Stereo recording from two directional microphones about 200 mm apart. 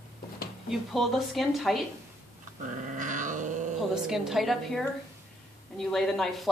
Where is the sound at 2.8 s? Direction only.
40° right (ahead or behind).